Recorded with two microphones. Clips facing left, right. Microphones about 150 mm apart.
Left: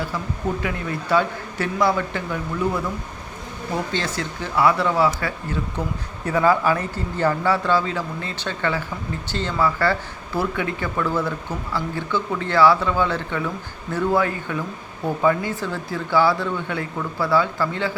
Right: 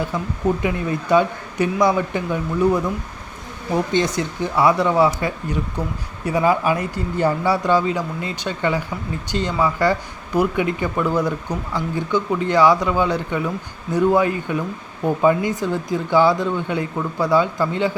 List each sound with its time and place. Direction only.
0.6 s speech: 20° right (ahead or behind)
3.9 s speech: 20° right (ahead or behind)